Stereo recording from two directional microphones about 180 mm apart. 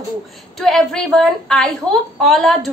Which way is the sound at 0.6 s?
Centre (ahead or behind).